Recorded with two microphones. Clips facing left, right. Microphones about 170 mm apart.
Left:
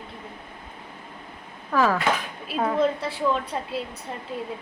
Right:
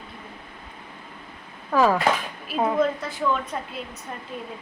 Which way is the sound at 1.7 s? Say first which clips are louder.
Right 2 dB; 15° right (ahead or behind).